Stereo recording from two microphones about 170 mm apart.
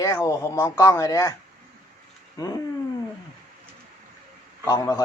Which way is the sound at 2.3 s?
20° left (ahead or behind).